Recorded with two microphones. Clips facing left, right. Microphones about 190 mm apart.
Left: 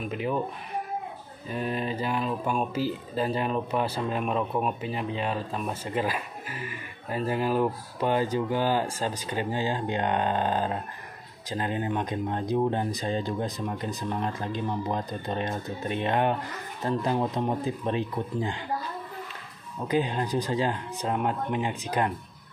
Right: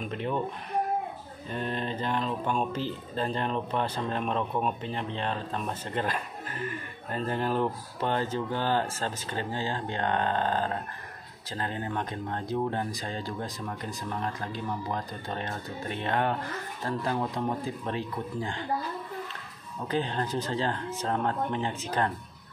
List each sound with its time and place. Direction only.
0.0 s speech: 5° left (ahead or behind)
1.5 s speech: 5° left (ahead or behind)
19.9 s speech: 15° left (ahead or behind)